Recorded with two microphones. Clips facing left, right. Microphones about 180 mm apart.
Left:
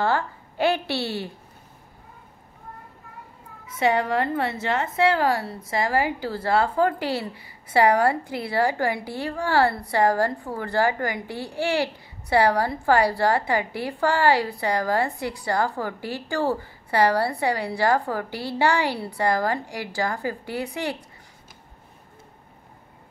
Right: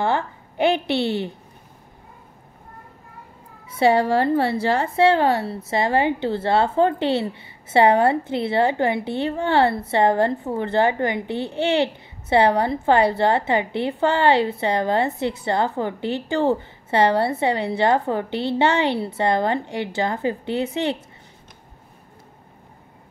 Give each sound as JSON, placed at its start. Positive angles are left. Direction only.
{"t": 0.0, "sound": "a woman's voice", "side_deg": -20}
{"t": 3.6, "sound": "a woman's voice", "side_deg": -30}